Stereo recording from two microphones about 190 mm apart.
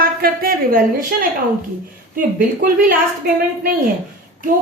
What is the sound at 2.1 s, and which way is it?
A woman's voice, 45° right (ahead or behind).